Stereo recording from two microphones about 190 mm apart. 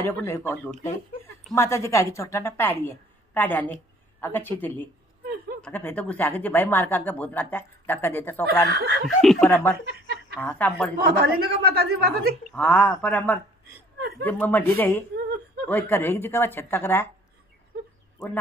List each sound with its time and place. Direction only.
0.0 s a woman's voice: 10° left (ahead or behind)
8.6 s speech: 55° right (ahead or behind)
9.2 s speech: 5° left (ahead or behind)
9.8 s a sound: 55° right (ahead or behind)
10.3 s speech: 10° left (ahead or behind)
11.1 s speech: 55° right (ahead or behind)
12.4 s speech: 5° left (ahead or behind)
13.9 s a sound: 55° right (ahead or behind)
14.2 s speech: 10° left (ahead or behind)